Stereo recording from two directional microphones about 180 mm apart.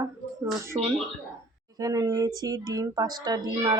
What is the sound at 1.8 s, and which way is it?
Speech, 20° right (ahead or behind).